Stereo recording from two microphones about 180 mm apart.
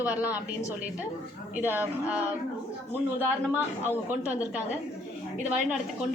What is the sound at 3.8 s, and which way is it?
Speech, 10° right (ahead or behind).